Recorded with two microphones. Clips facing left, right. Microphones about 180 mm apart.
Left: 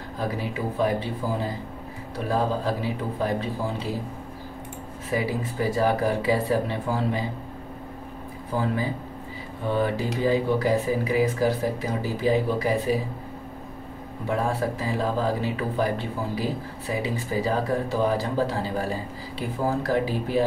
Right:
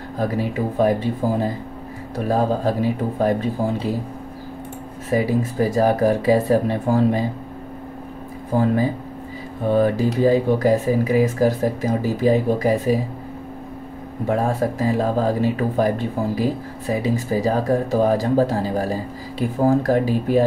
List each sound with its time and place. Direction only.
0.4 s speech: 45° right (ahead or behind)
5.1 s speech: 45° right (ahead or behind)
8.5 s speech: 45° right (ahead or behind)
14.2 s speech: 45° right (ahead or behind)